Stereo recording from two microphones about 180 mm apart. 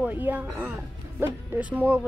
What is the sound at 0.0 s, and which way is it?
Speech, 10° right (ahead or behind).